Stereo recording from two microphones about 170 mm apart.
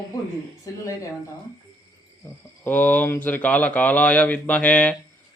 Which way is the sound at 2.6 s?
10° left (ahead or behind).